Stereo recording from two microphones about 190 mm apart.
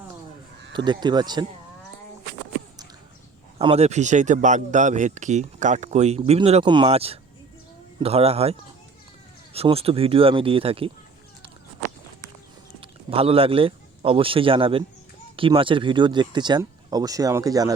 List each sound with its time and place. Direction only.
0.9 s speech: 25° right (ahead or behind)
3.6 s speech: 30° right (ahead or behind)
12.8 s speech: 30° right (ahead or behind)